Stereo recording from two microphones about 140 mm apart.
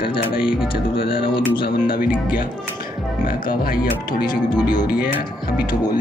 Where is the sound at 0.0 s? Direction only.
40° left (ahead or behind).